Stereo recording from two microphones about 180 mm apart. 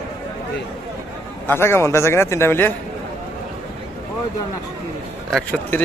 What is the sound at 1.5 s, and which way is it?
Speech, 15° left (ahead or behind).